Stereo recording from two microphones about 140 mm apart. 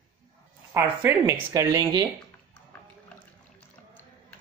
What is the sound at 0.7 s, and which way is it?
Speech, 20° right (ahead or behind).